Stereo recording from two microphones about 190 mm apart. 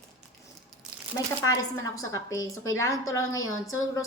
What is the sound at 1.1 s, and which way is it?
Speech, 20° left (ahead or behind).